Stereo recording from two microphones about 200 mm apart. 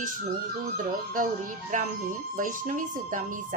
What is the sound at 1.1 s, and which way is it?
Speech, 40° right (ahead or behind).